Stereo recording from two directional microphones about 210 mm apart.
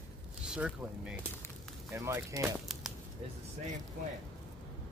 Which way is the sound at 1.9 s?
15° right (ahead or behind).